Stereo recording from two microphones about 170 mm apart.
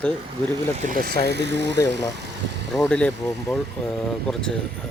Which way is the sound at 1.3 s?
90° right.